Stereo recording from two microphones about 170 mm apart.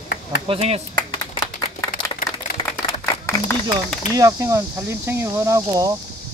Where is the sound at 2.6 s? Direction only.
15° left (ahead or behind).